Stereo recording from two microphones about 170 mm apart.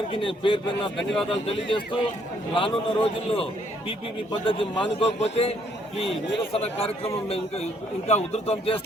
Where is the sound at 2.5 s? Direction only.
30° left (ahead or behind).